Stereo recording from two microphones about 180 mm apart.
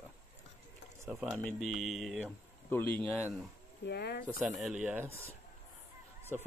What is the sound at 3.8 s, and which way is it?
Speech, 70° left (ahead or behind).